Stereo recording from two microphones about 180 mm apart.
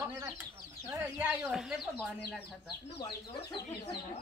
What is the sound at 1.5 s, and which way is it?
Speech, centre (ahead or behind).